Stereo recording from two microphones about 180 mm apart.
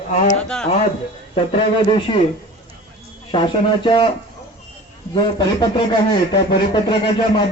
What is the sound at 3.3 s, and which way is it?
Speech, 25° left (ahead or behind).